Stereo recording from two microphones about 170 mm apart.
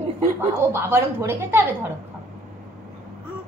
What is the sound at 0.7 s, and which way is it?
Speech, 15° right (ahead or behind).